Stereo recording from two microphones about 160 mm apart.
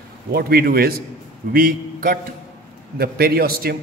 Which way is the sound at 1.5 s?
65° right (ahead or behind).